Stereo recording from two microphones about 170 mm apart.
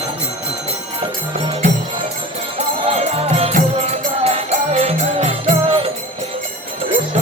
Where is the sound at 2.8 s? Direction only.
40° right (ahead or behind).